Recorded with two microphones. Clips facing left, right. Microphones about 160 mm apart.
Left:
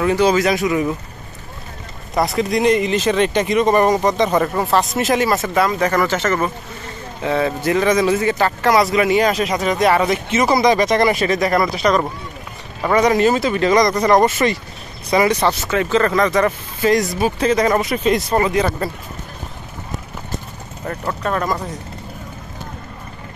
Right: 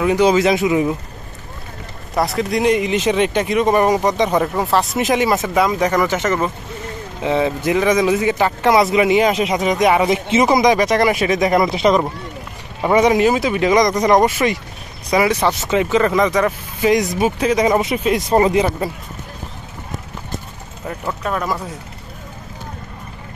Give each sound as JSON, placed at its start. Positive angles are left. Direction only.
{"t": 0.0, "sound": "speech", "side_deg": -15}
{"t": 2.1, "sound": "speech", "side_deg": -5}
{"t": 18.3, "sound": "speech", "side_deg": -25}
{"t": 20.8, "sound": "speech", "side_deg": -5}